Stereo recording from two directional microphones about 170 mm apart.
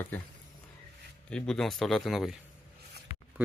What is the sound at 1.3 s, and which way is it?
Speech, 5° left (ahead or behind).